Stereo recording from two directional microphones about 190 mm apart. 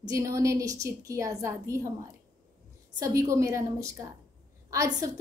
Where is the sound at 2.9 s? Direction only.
15° right (ahead or behind).